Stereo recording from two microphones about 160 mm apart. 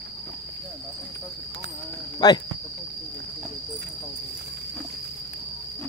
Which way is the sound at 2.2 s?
25° left (ahead or behind).